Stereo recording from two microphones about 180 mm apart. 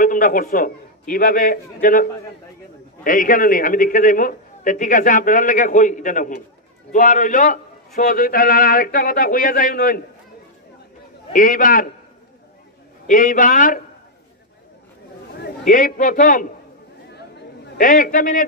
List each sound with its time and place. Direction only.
0.0 s a man's voice: 50° left (ahead or behind)
11.3 s a man's voice: 50° left (ahead or behind)
13.0 s a man's voice: 45° left (ahead or behind)
15.6 s a man's voice: 45° left (ahead or behind)
17.7 s a man's voice: 50° left (ahead or behind)